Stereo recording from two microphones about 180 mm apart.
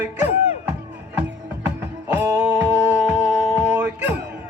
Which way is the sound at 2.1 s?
10° right (ahead or behind).